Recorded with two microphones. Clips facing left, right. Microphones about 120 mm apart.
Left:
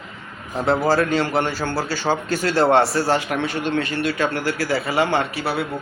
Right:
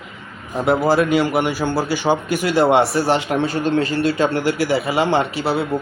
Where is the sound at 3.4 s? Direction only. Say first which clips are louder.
Right 4 dB; 35° right (ahead or behind).